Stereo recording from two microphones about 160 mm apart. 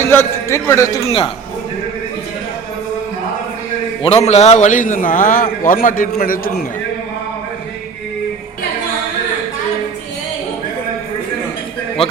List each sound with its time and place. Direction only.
0.0 s music: 15° left (ahead or behind)
0.7 s speech: 20° left (ahead or behind)
4.0 s a man's voice: 40° left (ahead or behind); by 6.7 s 65° left (ahead or behind)